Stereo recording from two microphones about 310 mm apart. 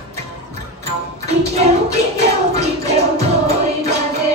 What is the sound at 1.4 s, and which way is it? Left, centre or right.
Music, right.